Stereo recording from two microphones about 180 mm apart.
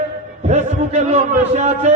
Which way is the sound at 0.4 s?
40° right (ahead or behind).